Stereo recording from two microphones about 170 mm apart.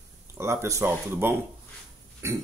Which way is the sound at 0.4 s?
15° right (ahead or behind).